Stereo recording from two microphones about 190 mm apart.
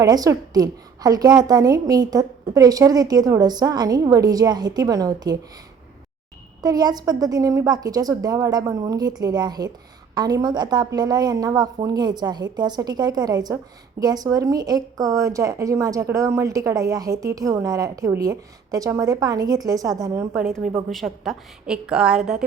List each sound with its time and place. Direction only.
0.0 s a woman's voice: 20° right (ahead or behind)
6.6 s a woman's voice: 20° right (ahead or behind)
20.9 s a woman's voice: centre (ahead or behind)